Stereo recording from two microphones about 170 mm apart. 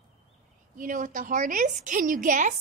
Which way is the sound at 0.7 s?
50° right (ahead or behind).